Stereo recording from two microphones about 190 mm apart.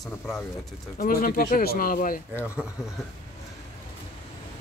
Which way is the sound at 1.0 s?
50° left (ahead or behind).